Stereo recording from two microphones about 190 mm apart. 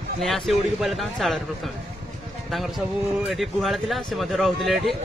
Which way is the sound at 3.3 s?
Centre (ahead or behind).